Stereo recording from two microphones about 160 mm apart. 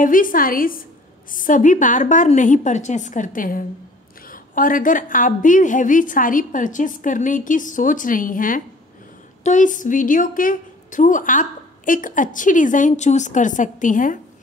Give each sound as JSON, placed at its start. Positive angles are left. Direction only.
{"t": 0.0, "sound": "a woman's voice", "side_deg": 60}